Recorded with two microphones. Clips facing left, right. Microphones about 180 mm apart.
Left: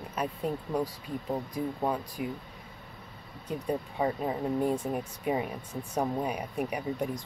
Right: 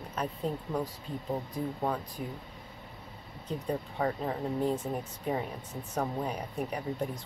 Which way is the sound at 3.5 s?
10° left (ahead or behind).